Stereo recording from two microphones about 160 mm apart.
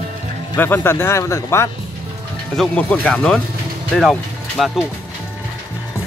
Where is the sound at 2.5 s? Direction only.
5° left (ahead or behind).